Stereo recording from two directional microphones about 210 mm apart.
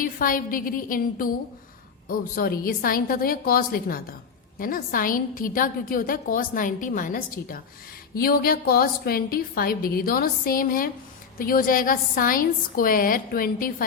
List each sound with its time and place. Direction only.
0.0 s a woman's voice: 40° left (ahead or behind)